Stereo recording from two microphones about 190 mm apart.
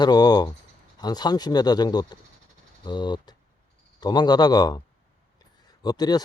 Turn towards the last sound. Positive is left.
turn(degrees=20)  # may be behind; listen again after turning